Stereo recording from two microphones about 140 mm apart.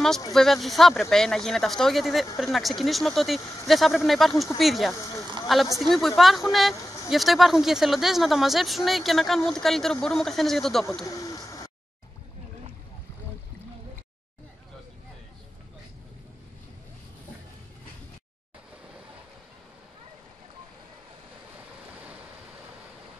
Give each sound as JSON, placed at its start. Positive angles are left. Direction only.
{"t": 0.3, "sound": "speech", "side_deg": 0}
{"t": 4.9, "sound": "speech", "side_deg": 20}
{"t": 5.8, "sound": "speech", "side_deg": 0}
{"t": 11.1, "sound": "bird", "side_deg": 25}